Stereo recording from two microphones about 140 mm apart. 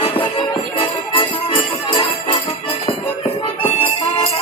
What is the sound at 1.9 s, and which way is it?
Music, 40° left (ahead or behind).